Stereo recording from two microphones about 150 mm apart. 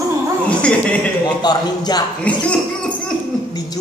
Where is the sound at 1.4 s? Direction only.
25° left (ahead or behind).